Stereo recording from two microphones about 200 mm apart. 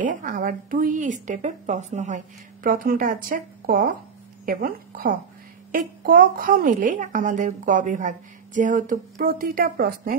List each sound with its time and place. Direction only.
0.0 s a woman's voice: 45° right (ahead or behind)